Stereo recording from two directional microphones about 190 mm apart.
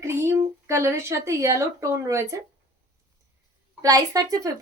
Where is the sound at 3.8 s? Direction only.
20° right (ahead or behind).